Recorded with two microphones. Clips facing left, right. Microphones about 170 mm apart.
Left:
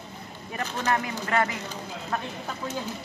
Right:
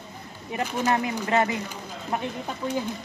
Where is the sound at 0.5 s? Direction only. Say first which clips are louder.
Right 3 dB; 15° right (ahead or behind).